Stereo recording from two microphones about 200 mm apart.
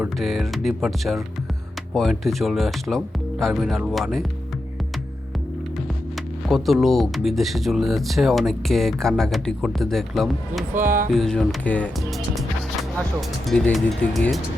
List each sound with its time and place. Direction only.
0.2 s speech: centre (ahead or behind)
6.5 s speech: centre (ahead or behind)
10.8 s speech: 45° right (ahead or behind)
11.1 s speech: centre (ahead or behind)
13.5 s speech: centre (ahead or behind)